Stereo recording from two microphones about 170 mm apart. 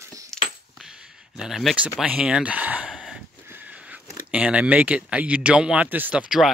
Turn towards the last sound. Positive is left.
turn(degrees=-5)  # may be behind; listen again after turning